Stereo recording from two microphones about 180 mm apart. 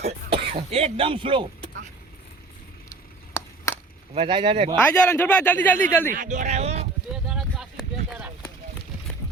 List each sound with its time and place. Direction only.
0.0 s speech: 35° right (ahead or behind)
2.9 s a sound: 15° left (ahead or behind)
4.1 s speech: 30° right (ahead or behind)
4.8 s a man's voice: 10° left (ahead or behind)
6.1 s speech: 45° right (ahead or behind)
7.1 s a sound: 5° right (ahead or behind)